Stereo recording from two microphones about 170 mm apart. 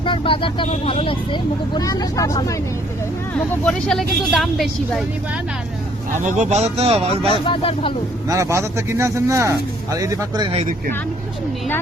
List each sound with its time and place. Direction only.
0.0 s speech: 30° left (ahead or behind)
3.6 s speech: 5° left (ahead or behind)
6.1 s speech: 45° right (ahead or behind)
7.4 s speech: 30° left (ahead or behind)
8.3 s speech: 15° right (ahead or behind)
10.5 s speech: 40° right (ahead or behind)